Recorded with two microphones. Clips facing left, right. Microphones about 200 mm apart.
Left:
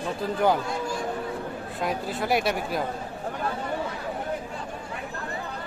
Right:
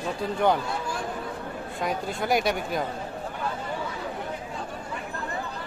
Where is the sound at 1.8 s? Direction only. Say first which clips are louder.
Even; centre (ahead or behind).